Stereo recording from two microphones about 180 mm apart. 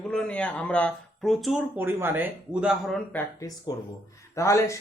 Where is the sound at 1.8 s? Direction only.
10° right (ahead or behind).